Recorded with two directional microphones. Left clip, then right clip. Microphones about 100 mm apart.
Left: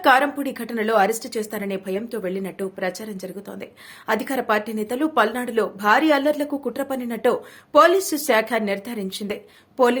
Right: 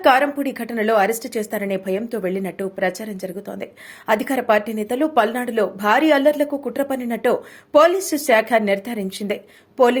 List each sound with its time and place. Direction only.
0.0 s a woman's voice: 20° right (ahead or behind); by 10.0 s 35° right (ahead or behind)